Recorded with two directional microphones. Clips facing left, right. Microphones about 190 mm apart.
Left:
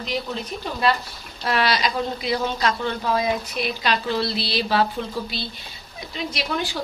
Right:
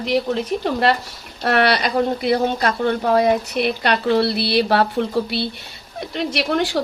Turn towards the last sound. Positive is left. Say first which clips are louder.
# right 7 dB
turn(degrees=-75)  # may be behind; listen again after turning